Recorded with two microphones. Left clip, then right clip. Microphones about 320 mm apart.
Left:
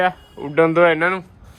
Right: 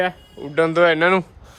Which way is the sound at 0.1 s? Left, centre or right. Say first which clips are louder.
Left 3 dB; centre.